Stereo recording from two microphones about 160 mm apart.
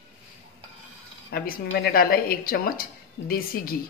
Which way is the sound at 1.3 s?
75° left (ahead or behind).